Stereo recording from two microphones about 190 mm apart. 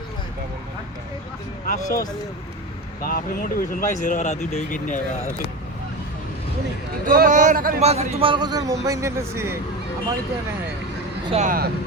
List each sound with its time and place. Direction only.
1.6 s speech: 45° left (ahead or behind)
7.1 s speech: 45° right (ahead or behind)
7.8 s a man's voice: 35° right (ahead or behind); by 9.6 s 15° right (ahead or behind)
11.3 s speech: 35° right (ahead or behind)